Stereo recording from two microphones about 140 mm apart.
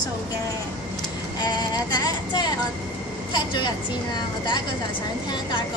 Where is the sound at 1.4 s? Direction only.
30° left (ahead or behind).